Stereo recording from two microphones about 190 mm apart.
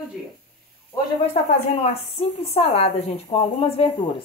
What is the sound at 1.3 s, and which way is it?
A woman's voice, 35° left (ahead or behind).